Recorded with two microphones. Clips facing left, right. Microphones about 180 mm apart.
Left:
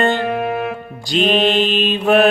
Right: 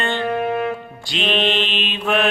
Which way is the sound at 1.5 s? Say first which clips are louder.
Left 6 dB; 40° left (ahead or behind).